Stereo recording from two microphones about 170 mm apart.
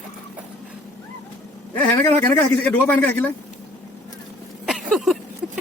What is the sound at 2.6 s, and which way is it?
Speech, 10° left (ahead or behind).